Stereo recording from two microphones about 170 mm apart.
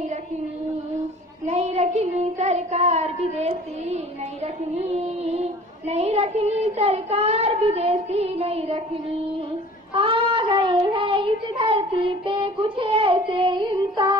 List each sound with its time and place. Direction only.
1.4 s child singing: 40° right (ahead or behind)
9.9 s child singing: 30° right (ahead or behind)